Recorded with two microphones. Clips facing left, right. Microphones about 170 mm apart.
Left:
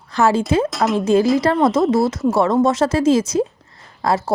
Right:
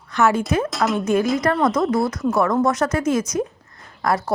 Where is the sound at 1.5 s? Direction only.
25° left (ahead or behind).